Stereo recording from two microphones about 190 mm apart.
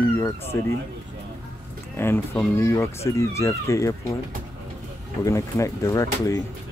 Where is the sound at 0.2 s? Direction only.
15° left (ahead or behind).